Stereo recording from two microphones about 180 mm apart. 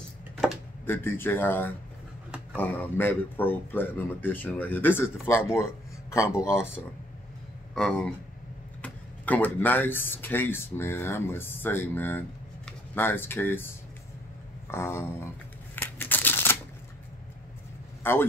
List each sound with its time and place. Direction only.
0.8 s speech: 10° left (ahead or behind)
7.7 s speech: 5° left (ahead or behind)
15.7 s a sound: 10° left (ahead or behind)
18.0 s speech: 10° left (ahead or behind)